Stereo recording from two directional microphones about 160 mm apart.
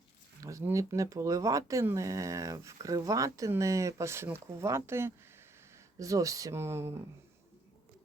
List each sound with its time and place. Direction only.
0.4 s speech: 20° right (ahead or behind)